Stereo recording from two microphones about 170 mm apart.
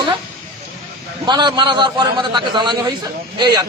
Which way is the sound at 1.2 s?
25° right (ahead or behind).